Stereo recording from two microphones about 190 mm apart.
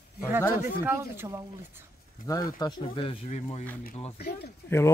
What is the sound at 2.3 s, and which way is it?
Speech, 20° left (ahead or behind).